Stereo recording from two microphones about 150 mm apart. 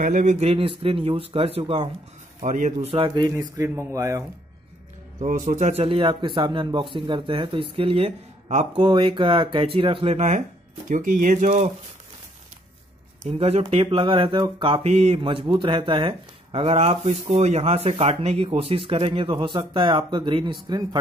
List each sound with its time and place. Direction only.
0.0 s speech: 60° right (ahead or behind); by 1.9 s 35° right (ahead or behind)
2.4 s speech: 55° right (ahead or behind)
2.9 s speech: 35° right (ahead or behind)
3.3 s speech: 25° right (ahead or behind)
5.5 s speech: 50° right (ahead or behind)
8.7 s speech: 35° right (ahead or behind); by 10.4 s 50° right (ahead or behind)
10.9 s speech: 60° right (ahead or behind)
13.2 s speech: 45° right (ahead or behind); by 21.0 s 25° right (ahead or behind)